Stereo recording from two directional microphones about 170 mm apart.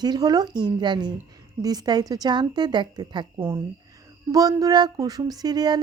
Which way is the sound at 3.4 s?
15° right (ahead or behind).